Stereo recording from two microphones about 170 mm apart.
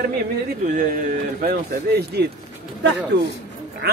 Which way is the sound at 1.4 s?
70° right (ahead or behind).